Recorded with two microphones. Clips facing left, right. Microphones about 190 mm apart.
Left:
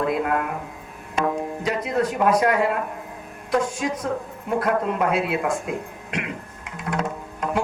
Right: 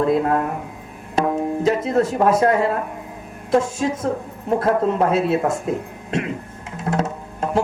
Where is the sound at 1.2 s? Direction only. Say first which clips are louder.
Right 3 dB; 35° right (ahead or behind).